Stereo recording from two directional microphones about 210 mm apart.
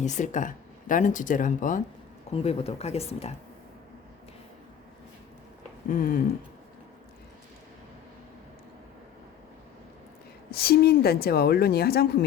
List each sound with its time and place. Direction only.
0.0 s speech: 35° left (ahead or behind)
5.9 s speech: 40° left (ahead or behind)
10.5 s a woman's voice: 45° left (ahead or behind)